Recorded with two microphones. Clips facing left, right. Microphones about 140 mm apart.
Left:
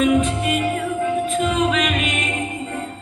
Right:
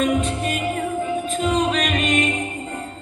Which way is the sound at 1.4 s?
40° right (ahead or behind).